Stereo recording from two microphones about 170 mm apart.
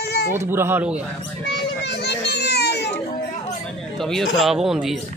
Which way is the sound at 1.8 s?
80° left.